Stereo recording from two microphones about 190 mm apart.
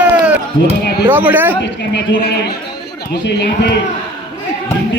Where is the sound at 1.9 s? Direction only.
60° left (ahead or behind).